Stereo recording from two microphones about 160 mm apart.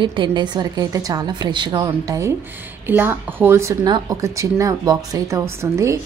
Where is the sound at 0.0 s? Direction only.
30° right (ahead or behind).